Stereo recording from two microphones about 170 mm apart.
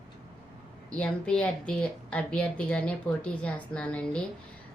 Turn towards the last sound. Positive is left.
turn(degrees=5)  # may be behind; listen again after turning